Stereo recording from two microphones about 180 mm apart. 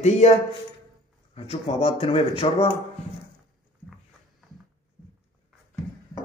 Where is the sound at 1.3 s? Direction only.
35° left (ahead or behind).